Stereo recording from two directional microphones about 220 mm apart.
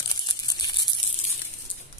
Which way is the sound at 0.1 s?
20° left (ahead or behind).